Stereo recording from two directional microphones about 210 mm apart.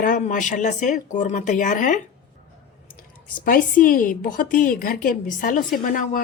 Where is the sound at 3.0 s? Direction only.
40° left (ahead or behind).